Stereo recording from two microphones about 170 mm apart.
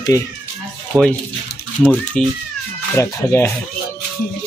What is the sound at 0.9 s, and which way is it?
Speech, 10° right (ahead or behind).